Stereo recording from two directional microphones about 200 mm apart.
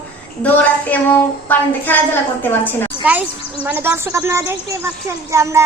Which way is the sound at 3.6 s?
10° right (ahead or behind).